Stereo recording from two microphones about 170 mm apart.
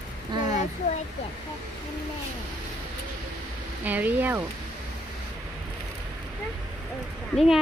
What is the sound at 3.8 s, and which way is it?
Speech, 10° right (ahead or behind).